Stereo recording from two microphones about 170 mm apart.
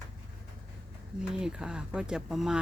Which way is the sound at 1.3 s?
5° right (ahead or behind).